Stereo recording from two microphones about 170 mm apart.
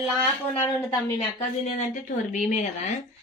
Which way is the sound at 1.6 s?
45° left (ahead or behind).